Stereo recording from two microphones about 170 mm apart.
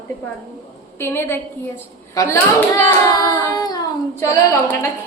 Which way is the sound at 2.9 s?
15° left (ahead or behind).